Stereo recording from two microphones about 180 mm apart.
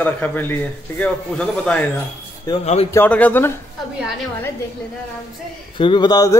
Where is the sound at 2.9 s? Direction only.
10° left (ahead or behind).